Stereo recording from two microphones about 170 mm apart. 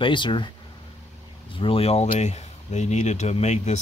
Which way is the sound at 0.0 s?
30° left (ahead or behind).